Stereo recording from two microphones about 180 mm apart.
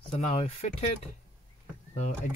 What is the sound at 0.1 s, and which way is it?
Speech, 35° left (ahead or behind).